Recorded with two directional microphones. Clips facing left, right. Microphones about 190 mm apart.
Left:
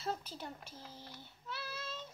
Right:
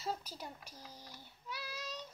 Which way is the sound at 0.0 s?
10° right (ahead or behind).